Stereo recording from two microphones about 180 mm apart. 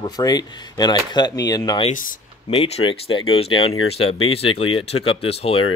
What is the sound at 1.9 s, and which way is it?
Speech, 50° left (ahead or behind).